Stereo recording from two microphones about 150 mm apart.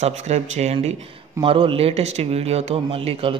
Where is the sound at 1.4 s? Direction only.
35° right (ahead or behind).